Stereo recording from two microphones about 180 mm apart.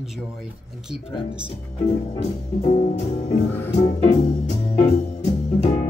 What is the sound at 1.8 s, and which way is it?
Music, 40° left (ahead or behind).